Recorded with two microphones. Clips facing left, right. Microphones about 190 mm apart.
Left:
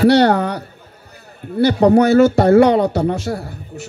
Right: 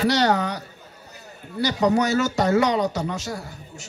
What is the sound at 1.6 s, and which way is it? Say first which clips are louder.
A man's voice: left 9 dB; 55° left (ahead or behind).